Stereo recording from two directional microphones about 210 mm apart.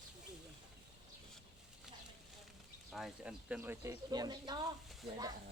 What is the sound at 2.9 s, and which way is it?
Speech, 5° right (ahead or behind).